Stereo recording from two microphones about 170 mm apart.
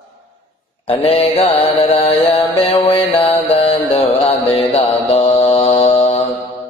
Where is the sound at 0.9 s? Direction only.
35° left (ahead or behind).